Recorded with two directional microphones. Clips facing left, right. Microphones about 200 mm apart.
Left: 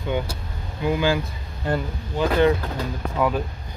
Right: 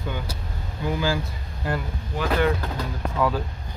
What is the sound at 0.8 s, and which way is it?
Speech, 20° left (ahead or behind).